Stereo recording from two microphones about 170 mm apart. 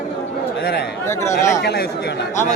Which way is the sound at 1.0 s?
15° left (ahead or behind).